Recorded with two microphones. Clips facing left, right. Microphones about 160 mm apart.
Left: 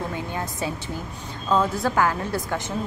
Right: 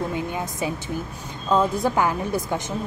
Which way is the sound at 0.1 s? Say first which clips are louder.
Right 2 dB; 15° right (ahead or behind).